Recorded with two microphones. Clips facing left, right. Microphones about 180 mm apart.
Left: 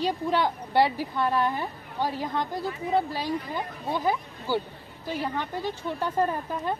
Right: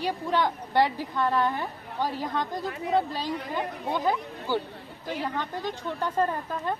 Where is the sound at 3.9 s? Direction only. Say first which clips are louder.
Left 1 dB; 10° left (ahead or behind).